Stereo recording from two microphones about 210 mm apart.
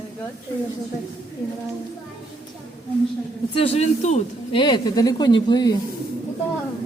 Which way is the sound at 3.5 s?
30° left (ahead or behind).